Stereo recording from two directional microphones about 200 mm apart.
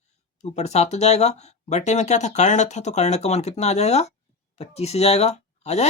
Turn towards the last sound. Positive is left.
turn(degrees=35)  # may be behind; listen again after turning